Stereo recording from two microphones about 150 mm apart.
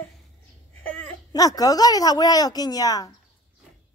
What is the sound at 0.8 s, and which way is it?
Baby cry, 10° left (ahead or behind).